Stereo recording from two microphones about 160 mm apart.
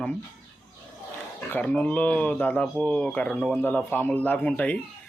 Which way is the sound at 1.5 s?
10° left (ahead or behind).